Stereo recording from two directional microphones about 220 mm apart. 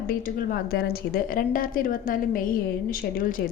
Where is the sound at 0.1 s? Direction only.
45° left (ahead or behind).